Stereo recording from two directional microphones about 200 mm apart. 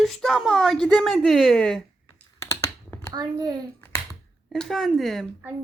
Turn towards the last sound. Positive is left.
turn(degrees=-5)  # may be behind; listen again after turning